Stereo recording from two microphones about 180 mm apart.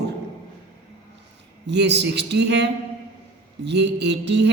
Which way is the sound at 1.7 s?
70° right (ahead or behind).